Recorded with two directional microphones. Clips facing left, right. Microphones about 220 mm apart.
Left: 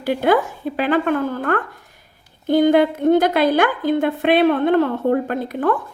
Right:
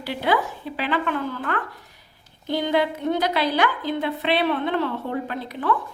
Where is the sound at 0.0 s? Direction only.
50° left (ahead or behind).